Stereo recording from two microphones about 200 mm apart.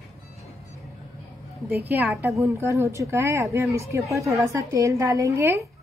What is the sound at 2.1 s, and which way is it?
Speech, 10° right (ahead or behind).